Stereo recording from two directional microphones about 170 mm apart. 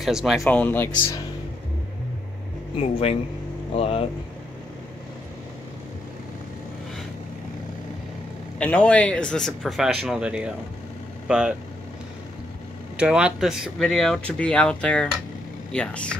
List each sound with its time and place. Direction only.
0.0 s speech: centre (ahead or behind)
0.4 s speech: 10° left (ahead or behind)
2.8 s speech: 35° left (ahead or behind)
8.5 s speech: 10° left (ahead or behind)
12.9 s speech: 5° right (ahead or behind)